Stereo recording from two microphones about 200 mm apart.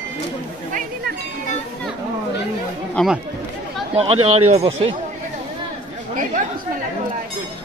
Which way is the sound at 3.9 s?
30° right (ahead or behind).